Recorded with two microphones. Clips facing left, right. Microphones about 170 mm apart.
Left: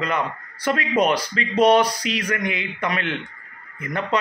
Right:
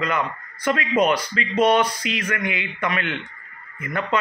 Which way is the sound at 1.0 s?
35° left (ahead or behind).